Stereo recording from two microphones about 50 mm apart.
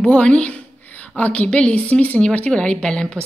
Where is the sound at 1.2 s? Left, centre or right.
Left.